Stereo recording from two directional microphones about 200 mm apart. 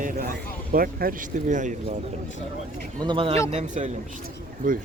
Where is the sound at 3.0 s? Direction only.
25° right (ahead or behind).